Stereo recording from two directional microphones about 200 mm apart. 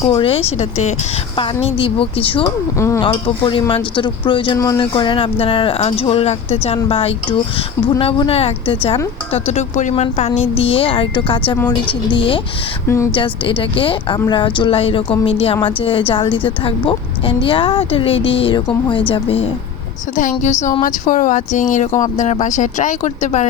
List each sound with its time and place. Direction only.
0.1 s speech: 25° left (ahead or behind)
2.7 s speech: 15° left (ahead or behind)
11.5 s a woman's voice: 10° left (ahead or behind)
12.0 s speech: 25° left (ahead or behind)
12.9 s a woman's voice: 10° left (ahead or behind)
13.1 s speech: 25° left (ahead or behind)